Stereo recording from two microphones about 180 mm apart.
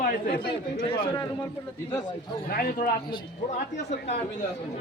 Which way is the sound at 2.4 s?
55° left (ahead or behind).